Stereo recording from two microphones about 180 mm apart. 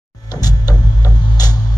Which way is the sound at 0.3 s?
20° left (ahead or behind).